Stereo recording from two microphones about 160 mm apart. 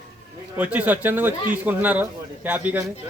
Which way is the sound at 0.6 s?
10° right (ahead or behind).